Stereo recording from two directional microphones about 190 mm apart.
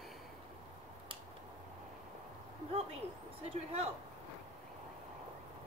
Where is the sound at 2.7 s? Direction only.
30° right (ahead or behind).